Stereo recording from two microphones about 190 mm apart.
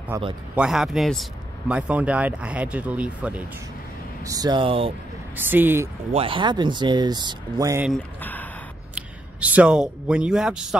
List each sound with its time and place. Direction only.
0.6 s speech: centre (ahead or behind)
4.2 s speech: 20° right (ahead or behind)
5.3 s speech: 10° right (ahead or behind)
6.1 s speech: 30° right (ahead or behind)
8.2 s a sound: 10° left (ahead or behind)
8.9 s speech: 5° right (ahead or behind)